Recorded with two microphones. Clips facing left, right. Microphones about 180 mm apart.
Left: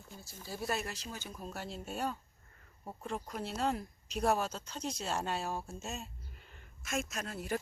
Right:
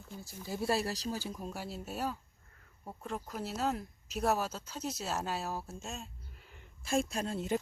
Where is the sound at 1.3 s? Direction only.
10° right (ahead or behind).